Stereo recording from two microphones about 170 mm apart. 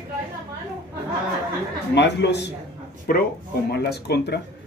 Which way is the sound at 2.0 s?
90° left.